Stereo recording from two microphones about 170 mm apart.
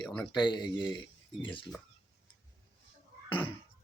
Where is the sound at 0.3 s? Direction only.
25° left (ahead or behind).